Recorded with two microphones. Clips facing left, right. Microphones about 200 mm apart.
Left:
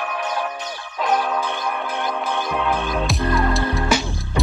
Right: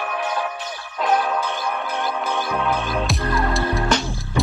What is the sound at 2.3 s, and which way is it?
Music, centre (ahead or behind).